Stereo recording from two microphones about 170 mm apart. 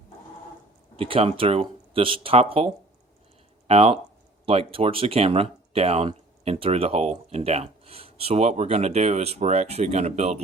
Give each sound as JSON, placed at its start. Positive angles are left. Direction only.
{"t": 0.9, "sound": "speech", "side_deg": -35}